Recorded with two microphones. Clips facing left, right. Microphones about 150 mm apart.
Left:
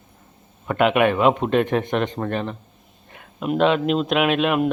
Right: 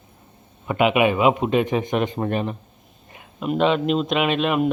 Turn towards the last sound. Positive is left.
turn(degrees=0)  # may be behind; listen again after turning